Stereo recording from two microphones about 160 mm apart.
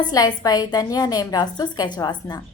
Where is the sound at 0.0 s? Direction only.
25° left (ahead or behind).